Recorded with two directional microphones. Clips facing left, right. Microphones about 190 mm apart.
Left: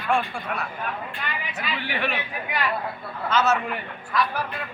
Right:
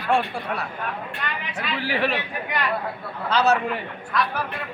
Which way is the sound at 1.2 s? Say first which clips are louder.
Right 2 dB; 5° left (ahead or behind).